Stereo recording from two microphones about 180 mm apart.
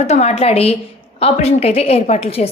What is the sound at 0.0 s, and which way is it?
A woman's voice, 35° left (ahead or behind).